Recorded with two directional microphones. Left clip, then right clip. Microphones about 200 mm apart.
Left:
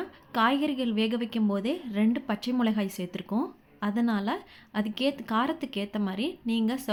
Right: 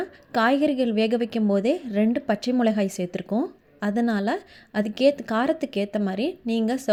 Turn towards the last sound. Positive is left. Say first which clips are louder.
# right 5 dB
turn(degrees=-25)  # may be behind; listen again after turning